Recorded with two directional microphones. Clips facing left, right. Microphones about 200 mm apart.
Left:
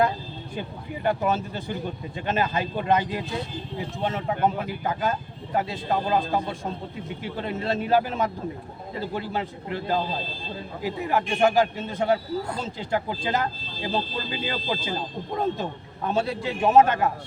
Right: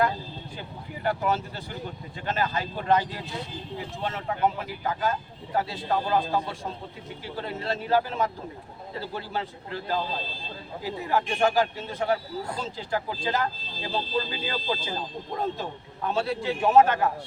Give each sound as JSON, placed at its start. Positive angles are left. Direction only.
{"t": 1.0, "sound": "speech", "side_deg": 20}
{"t": 16.0, "sound": "speech", "side_deg": 20}